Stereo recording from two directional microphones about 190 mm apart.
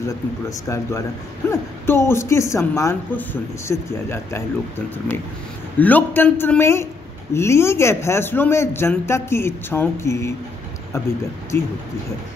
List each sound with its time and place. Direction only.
0.5 s speech: 15° left (ahead or behind)
11.5 s speech: 10° left (ahead or behind)